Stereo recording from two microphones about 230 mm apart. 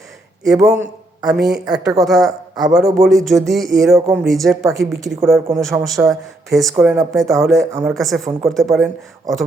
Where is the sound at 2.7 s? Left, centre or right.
Centre.